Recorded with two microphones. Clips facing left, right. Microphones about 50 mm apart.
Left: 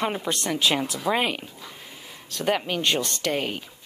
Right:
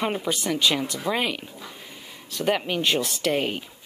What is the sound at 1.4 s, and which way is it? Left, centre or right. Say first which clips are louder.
Speech: right 1 dB; centre.